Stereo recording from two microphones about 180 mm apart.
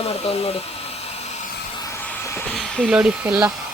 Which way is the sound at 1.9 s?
15° left (ahead or behind).